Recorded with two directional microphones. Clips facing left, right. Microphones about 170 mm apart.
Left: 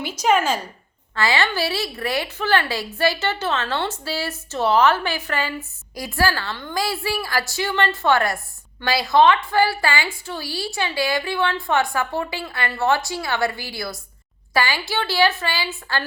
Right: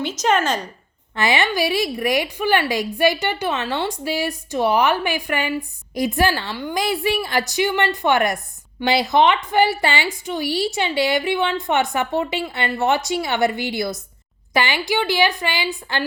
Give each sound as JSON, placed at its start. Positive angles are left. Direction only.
{"t": 0.0, "sound": "speech", "side_deg": 10}
{"t": 1.1, "sound": "a woman's voice", "side_deg": -20}